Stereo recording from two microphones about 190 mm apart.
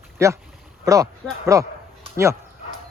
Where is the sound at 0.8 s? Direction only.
15° right (ahead or behind).